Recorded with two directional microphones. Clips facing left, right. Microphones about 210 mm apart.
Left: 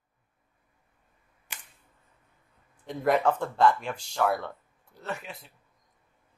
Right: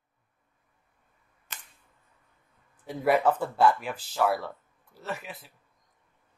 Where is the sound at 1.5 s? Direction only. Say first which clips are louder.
Even; 10° left (ahead or behind).